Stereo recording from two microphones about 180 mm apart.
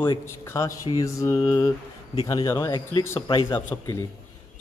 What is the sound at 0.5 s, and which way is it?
Speech, 15° left (ahead or behind).